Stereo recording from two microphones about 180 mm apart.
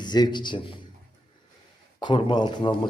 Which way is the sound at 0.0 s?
25° left (ahead or behind).